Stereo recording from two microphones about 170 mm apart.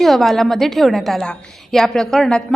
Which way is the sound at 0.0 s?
Centre (ahead or behind).